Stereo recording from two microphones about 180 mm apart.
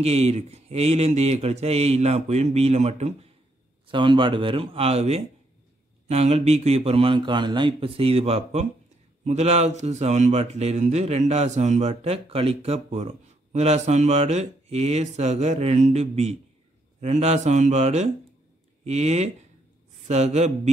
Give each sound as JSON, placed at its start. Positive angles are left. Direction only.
{"t": 0.0, "sound": "speech", "side_deg": -35}